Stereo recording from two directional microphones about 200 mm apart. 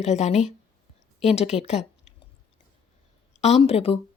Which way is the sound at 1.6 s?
30° left (ahead or behind).